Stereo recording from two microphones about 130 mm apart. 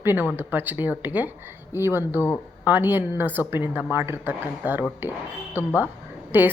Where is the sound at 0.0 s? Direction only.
15° right (ahead or behind).